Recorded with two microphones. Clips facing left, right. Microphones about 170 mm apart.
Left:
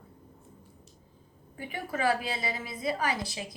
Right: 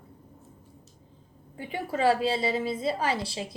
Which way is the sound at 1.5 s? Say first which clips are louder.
Right 4 dB; 25° right (ahead or behind).